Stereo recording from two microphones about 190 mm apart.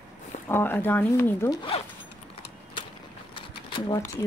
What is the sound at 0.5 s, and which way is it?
A woman's voice, 10° left (ahead or behind).